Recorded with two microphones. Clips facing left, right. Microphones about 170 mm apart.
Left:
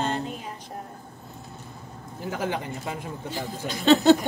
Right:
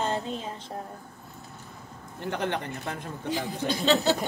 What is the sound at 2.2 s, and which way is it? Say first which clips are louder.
Speech: left 1 dB; 5° left (ahead or behind).